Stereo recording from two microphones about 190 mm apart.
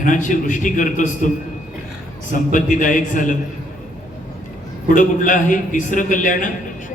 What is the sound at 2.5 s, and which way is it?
Speech, 45° left (ahead or behind).